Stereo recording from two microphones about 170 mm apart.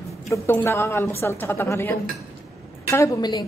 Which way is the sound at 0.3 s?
15° left (ahead or behind).